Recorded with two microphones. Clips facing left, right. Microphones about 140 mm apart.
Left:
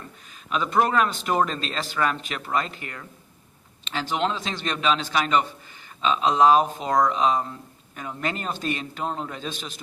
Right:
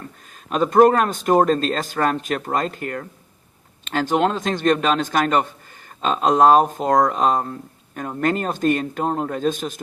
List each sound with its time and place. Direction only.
0.5 s a man's voice: 45° right (ahead or behind)